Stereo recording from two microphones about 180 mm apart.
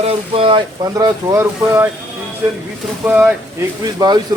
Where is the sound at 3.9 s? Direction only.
25° right (ahead or behind).